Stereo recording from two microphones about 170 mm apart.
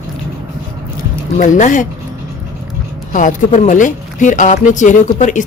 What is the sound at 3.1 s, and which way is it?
Speech, 50° left (ahead or behind).